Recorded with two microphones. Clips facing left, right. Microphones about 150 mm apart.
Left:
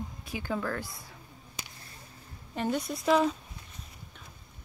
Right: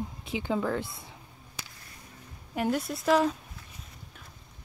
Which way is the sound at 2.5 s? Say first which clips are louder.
Right 2 dB; 5° right (ahead or behind).